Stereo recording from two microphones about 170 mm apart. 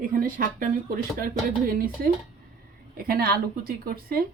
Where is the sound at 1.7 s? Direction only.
60° right (ahead or behind).